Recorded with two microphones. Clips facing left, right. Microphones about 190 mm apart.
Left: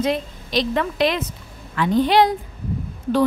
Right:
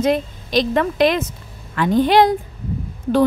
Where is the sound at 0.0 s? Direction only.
45° right (ahead or behind).